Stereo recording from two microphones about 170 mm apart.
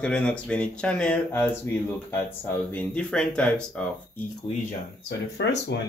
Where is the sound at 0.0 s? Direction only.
5° left (ahead or behind).